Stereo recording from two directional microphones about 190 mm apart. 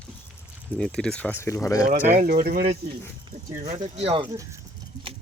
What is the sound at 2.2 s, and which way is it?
Speech, 50° right (ahead or behind).